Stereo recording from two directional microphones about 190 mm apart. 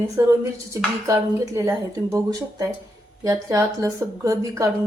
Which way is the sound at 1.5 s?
15° right (ahead or behind).